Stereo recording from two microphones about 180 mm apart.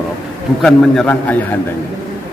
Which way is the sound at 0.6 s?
5° left (ahead or behind).